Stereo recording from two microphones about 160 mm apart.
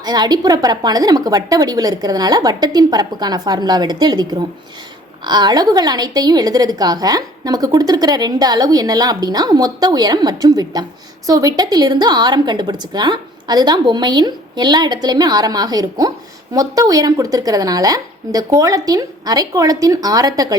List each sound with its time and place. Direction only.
0.0 s a woman's voice: 25° right (ahead or behind)